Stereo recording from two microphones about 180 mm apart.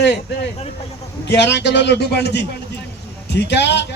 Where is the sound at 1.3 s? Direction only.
70° left (ahead or behind).